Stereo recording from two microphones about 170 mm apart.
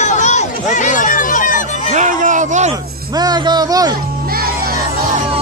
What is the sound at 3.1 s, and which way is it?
Music, 25° right (ahead or behind).